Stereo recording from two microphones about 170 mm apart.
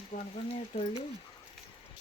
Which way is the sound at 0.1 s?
35° left (ahead or behind).